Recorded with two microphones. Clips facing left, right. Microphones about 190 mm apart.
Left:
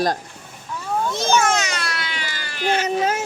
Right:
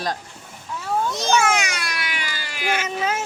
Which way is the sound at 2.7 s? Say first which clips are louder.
Left 4 dB; 40° left (ahead or behind).